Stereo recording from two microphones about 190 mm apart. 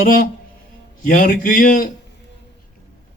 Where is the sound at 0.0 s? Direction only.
45° left (ahead or behind).